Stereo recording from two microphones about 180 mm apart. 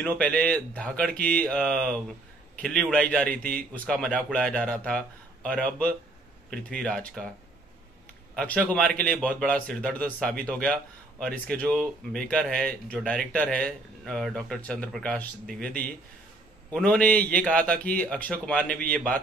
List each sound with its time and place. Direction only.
0.0 s a man's voice: 5° left (ahead or behind)
8.4 s a man's voice: 10° left (ahead or behind)